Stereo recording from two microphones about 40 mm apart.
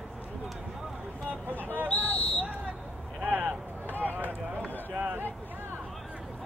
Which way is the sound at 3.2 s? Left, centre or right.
Right.